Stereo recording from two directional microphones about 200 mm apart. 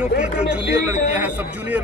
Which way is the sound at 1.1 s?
10° right (ahead or behind).